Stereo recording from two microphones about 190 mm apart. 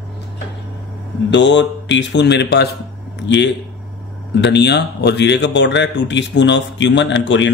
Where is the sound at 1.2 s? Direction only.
70° left (ahead or behind).